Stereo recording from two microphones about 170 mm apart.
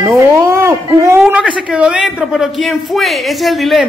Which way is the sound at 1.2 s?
5° right (ahead or behind).